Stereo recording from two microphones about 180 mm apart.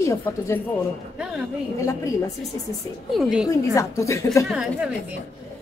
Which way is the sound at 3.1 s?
5° right (ahead or behind).